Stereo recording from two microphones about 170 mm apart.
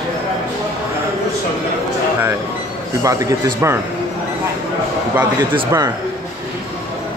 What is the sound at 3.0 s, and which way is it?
Speech, 20° right (ahead or behind).